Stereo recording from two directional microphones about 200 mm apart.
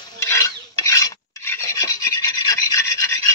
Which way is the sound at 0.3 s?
15° left (ahead or behind).